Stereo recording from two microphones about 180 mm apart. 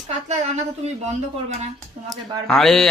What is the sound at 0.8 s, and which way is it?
Speech, 40° right (ahead or behind).